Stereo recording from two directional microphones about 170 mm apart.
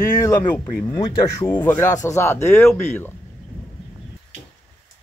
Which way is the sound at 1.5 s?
10° left (ahead or behind).